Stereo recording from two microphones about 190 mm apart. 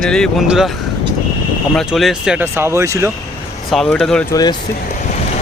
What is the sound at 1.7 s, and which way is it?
Speech, centre (ahead or behind).